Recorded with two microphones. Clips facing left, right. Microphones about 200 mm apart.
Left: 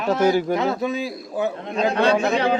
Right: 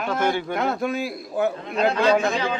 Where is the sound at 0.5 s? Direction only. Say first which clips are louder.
Left 2 dB; centre (ahead or behind).